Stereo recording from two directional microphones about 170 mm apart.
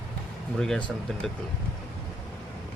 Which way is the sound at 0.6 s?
5° left (ahead or behind).